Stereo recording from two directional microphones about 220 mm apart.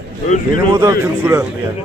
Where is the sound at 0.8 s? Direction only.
10° right (ahead or behind).